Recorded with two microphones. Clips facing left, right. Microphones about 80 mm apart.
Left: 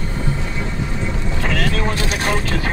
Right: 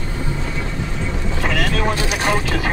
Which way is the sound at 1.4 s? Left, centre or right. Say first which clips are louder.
Right 1 dB; centre.